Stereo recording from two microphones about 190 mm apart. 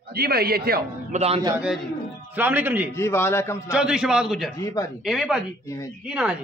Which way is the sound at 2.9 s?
15° left (ahead or behind).